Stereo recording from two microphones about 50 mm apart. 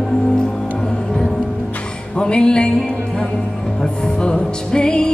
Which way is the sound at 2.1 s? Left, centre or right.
Centre.